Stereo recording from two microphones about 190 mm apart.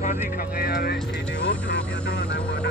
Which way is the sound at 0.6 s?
55° left (ahead or behind).